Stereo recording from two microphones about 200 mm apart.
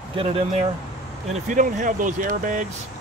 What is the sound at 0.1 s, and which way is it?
Speech, 30° right (ahead or behind).